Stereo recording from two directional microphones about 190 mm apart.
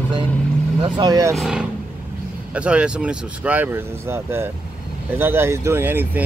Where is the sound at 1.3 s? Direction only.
Centre (ahead or behind).